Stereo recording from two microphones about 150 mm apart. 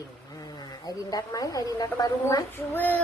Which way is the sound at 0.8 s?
25° left (ahead or behind).